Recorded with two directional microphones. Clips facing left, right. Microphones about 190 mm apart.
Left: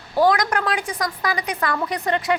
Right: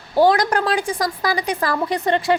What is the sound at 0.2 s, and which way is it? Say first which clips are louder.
A woman's voice: right 3 dB; 30° right (ahead or behind).